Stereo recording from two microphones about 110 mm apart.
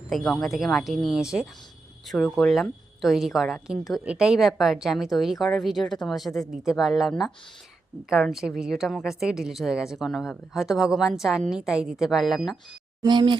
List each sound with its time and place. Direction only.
0.1 s a woman's voice: 5° left (ahead or behind)
8.1 s a woman's voice: 5° right (ahead or behind)
13.0 s speech: 45° right (ahead or behind)